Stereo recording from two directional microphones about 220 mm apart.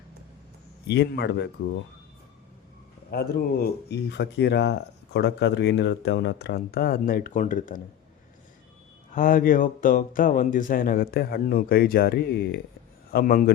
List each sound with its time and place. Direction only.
0.9 s speech: 50° left (ahead or behind)
3.1 s speech: 45° left (ahead or behind)
9.1 s a man's voice: 40° left (ahead or behind)